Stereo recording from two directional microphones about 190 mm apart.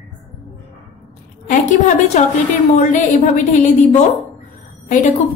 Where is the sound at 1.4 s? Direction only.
40° left (ahead or behind).